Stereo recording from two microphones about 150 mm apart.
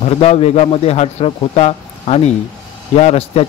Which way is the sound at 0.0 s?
45° left (ahead or behind).